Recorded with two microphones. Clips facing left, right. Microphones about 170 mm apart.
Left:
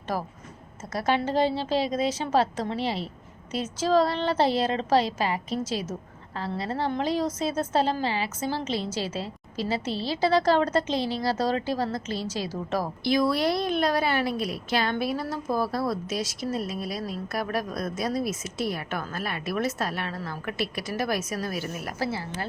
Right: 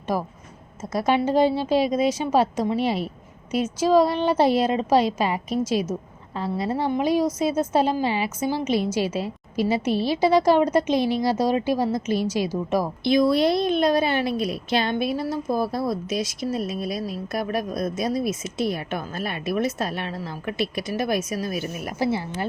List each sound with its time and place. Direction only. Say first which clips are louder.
0.1 s a woman's voice: right 4 dB; 15° right (ahead or behind)